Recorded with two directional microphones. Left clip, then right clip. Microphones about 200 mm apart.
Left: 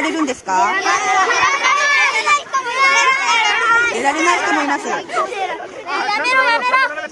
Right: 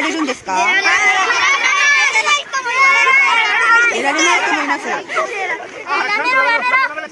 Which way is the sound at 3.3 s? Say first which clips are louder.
Right 1 dB; 50° left (ahead or behind).